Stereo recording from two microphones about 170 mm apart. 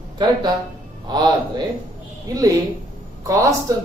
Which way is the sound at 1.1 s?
25° right (ahead or behind).